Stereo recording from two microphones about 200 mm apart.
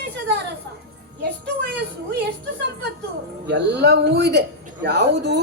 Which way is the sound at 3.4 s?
55° right (ahead or behind).